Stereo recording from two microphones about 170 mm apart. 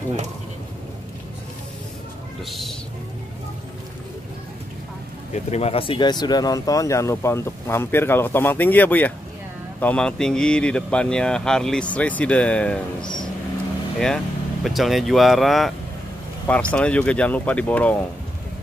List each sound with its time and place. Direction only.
5.3 s speech: 40° left (ahead or behind); by 15.7 s centre (ahead or behind)
16.7 s speech: 5° left (ahead or behind)